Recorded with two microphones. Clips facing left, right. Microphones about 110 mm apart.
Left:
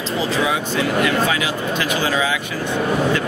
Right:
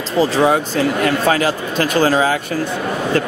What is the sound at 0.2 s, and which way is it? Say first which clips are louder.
Speech: right 8 dB; 40° right (ahead or behind).